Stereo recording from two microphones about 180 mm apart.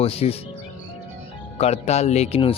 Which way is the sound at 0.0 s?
35° left (ahead or behind).